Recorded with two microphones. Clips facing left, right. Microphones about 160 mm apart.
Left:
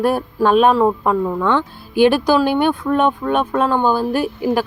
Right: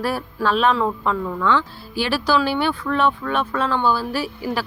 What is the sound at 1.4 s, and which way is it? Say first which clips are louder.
Speech: left 2 dB; 55° left (ahead or behind).